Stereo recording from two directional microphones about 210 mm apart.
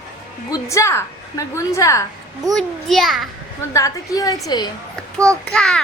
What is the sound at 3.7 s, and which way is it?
Speech, 15° left (ahead or behind).